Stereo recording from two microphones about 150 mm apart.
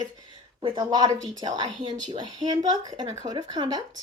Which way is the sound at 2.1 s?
25° right (ahead or behind).